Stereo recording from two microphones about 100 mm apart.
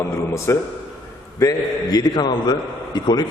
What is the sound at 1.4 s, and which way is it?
A man's voice, 40° left (ahead or behind).